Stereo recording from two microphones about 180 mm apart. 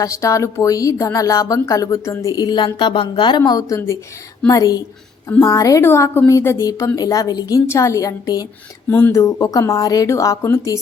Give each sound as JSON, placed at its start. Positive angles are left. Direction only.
{"t": 0.0, "sound": "a woman's voice", "side_deg": 15}